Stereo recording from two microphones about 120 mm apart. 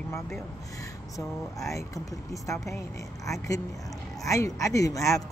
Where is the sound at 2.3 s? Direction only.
25° left (ahead or behind).